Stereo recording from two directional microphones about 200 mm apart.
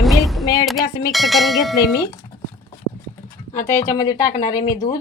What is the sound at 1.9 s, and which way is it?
Speech, 20° left (ahead or behind).